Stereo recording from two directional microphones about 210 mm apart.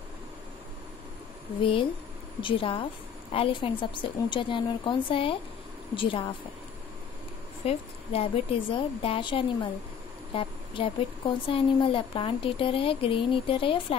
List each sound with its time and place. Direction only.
1.6 s speech: 25° left (ahead or behind)
7.6 s speech: 25° left (ahead or behind)